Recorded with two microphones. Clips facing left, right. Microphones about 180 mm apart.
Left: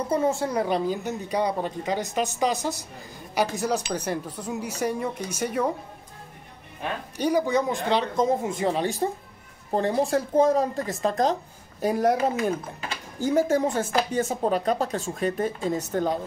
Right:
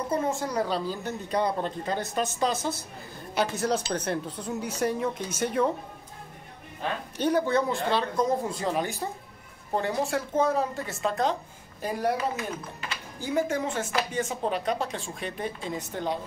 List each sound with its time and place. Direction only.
0.1 s a woman's voice: 30° left (ahead or behind); by 5.7 s 10° left (ahead or behind)
7.2 s a woman's voice: 10° left (ahead or behind)
9.8 s speech: 35° left (ahead or behind)